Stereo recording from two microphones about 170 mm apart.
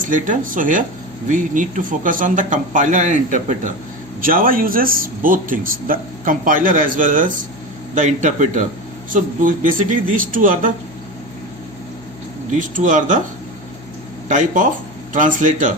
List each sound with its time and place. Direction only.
0.0 s a man's voice: 50° right (ahead or behind)
12.5 s a man's voice: 50° right (ahead or behind)
14.3 s a man's voice: 50° right (ahead or behind)